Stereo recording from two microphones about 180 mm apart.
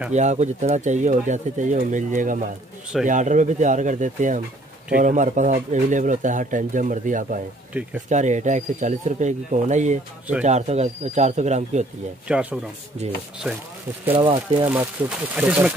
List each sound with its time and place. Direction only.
0.1 s speech: 40° right (ahead or behind)
7.7 s speech: 10° right (ahead or behind)
8.1 s speech: 40° right (ahead or behind)
12.3 s speech: 5° right (ahead or behind)
14.1 s speech: 30° right (ahead or behind)
14.7 s speech: 10° right (ahead or behind)